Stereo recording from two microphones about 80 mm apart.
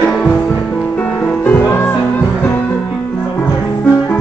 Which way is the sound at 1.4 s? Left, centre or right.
Left.